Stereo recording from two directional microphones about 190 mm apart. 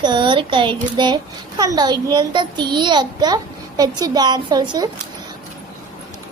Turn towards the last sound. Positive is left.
turn(degrees=-20)  # may be behind; listen again after turning